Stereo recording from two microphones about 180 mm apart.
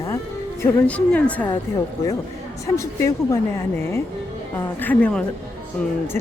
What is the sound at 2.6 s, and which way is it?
Speech, 15° left (ahead or behind).